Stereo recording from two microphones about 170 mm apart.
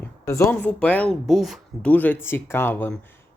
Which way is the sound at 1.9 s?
10° left (ahead or behind).